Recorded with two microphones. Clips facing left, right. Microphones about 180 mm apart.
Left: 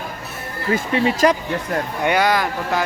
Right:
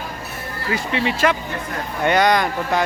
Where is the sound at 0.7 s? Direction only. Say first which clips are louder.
Left 4 dB; 40° left (ahead or behind).